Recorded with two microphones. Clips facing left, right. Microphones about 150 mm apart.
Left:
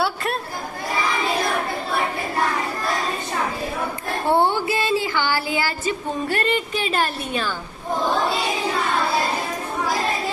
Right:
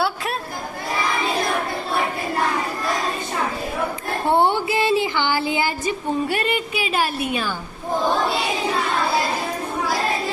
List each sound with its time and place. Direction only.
4.4 s music: 20° right (ahead or behind)